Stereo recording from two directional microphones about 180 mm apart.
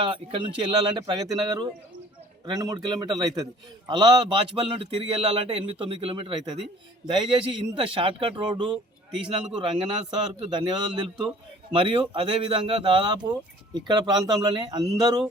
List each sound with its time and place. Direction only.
0.0 s speech: 30° right (ahead or behind)